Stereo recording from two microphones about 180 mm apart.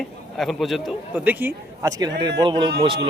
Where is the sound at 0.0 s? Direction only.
Centre (ahead or behind).